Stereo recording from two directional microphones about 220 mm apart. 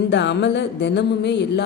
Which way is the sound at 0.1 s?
55° left (ahead or behind).